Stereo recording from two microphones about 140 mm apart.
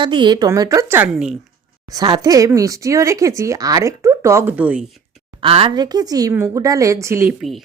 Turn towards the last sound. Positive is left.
turn(degrees=-15)  # may be behind; listen again after turning